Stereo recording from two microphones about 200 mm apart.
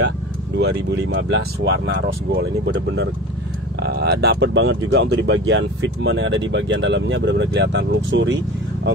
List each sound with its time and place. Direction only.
0.6 s speech: 55° right (ahead or behind)